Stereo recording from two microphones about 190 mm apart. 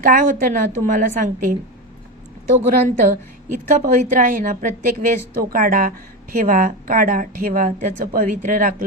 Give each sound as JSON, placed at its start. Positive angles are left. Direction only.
{"t": 0.0, "sound": "a woman's voice", "side_deg": -45}
{"t": 3.0, "sound": "a woman's voice", "side_deg": -45}